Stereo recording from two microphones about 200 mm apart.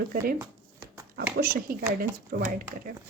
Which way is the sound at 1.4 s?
50° right (ahead or behind).